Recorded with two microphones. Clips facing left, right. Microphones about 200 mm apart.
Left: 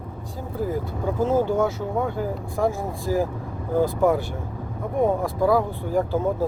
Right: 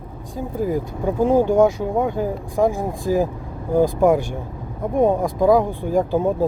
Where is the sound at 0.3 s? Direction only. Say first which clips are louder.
Right 5 dB; 15° right (ahead or behind).